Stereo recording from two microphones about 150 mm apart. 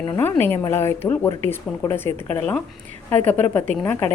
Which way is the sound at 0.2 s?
15° left (ahead or behind).